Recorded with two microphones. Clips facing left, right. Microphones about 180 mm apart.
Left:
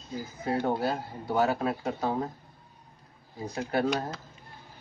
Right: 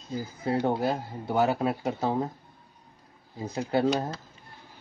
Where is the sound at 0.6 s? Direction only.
20° right (ahead or behind).